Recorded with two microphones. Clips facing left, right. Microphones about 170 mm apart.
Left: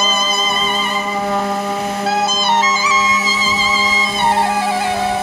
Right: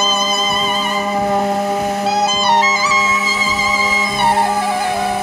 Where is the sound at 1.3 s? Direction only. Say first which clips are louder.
Right 2 dB; 25° right (ahead or behind).